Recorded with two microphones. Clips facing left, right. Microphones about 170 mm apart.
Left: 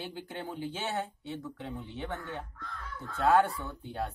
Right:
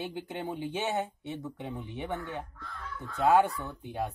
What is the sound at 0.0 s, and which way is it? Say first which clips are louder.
Speech: right 3 dB; 20° right (ahead or behind).